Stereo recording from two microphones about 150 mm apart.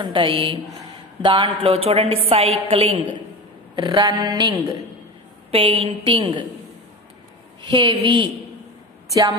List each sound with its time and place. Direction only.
0.0 s a woman's voice: 35° right (ahead or behind)
5.5 s a woman's voice: 35° right (ahead or behind)
7.7 s speech: 25° right (ahead or behind)